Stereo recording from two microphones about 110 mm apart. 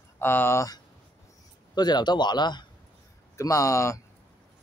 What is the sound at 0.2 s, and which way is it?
Speech, 20° left (ahead or behind).